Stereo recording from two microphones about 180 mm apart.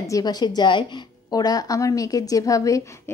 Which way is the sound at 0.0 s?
20° left (ahead or behind).